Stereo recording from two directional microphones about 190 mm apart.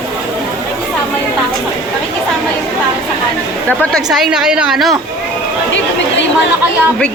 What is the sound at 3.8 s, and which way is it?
A woman's voice, centre (ahead or behind).